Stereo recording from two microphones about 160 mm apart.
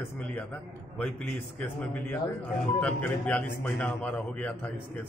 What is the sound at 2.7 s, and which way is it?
A man's voice, 10° left (ahead or behind).